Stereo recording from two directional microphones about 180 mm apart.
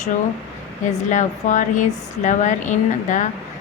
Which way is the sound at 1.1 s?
45° left (ahead or behind).